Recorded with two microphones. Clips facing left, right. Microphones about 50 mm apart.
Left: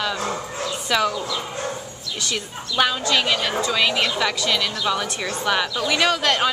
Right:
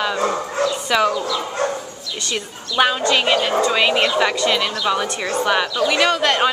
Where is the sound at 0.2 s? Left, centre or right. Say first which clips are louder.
Right 7 dB; right.